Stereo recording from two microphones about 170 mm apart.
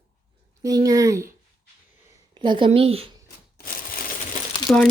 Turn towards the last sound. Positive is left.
turn(degrees=0)  # may be behind; listen again after turning